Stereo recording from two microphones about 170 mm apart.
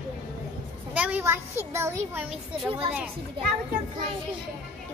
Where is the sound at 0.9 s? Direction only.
10° right (ahead or behind).